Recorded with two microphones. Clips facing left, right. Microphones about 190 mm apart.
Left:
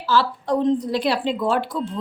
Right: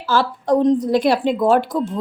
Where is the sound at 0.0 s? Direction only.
45° right (ahead or behind).